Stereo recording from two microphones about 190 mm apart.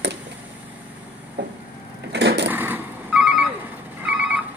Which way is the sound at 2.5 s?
10° right (ahead or behind).